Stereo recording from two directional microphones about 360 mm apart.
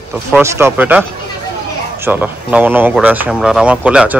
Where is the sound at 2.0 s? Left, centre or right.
Centre.